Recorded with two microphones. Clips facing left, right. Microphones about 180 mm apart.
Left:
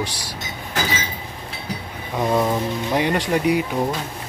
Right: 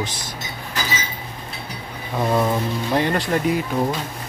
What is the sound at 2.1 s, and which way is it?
Speech, centre (ahead or behind).